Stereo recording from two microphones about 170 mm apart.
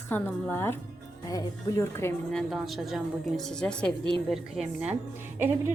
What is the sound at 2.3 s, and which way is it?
A woman's voice, centre (ahead or behind).